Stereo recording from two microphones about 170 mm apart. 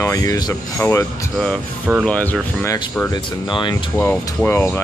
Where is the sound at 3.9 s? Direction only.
10° left (ahead or behind).